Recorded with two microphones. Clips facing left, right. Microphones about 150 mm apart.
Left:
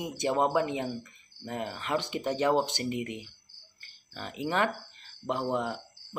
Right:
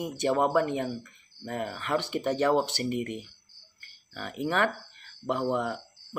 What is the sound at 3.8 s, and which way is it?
Cricket, 20° left (ahead or behind).